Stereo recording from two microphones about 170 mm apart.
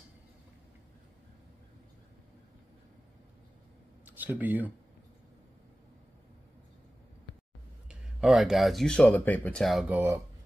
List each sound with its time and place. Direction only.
4.0 s speech: 10° right (ahead or behind)
7.9 s speech: 5° right (ahead or behind)
9.9 s speech: 15° right (ahead or behind)